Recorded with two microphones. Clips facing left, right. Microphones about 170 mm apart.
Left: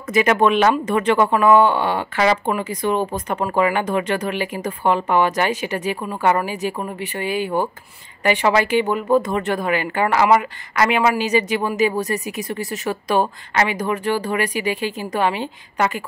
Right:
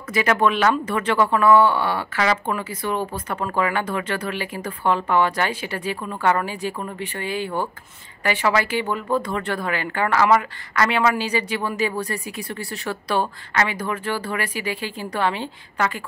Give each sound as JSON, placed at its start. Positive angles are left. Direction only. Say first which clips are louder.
{"t": 0.1, "sound": "speech", "louder": "left 4 dB", "side_deg": 20}